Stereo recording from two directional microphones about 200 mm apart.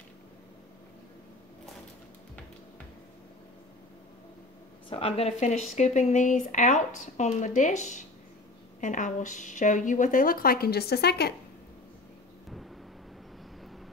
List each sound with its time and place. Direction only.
4.8 s a woman's voice: 30° left (ahead or behind); by 11.3 s 55° left (ahead or behind)